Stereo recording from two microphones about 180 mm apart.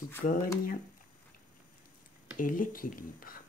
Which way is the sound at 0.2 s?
50° left (ahead or behind).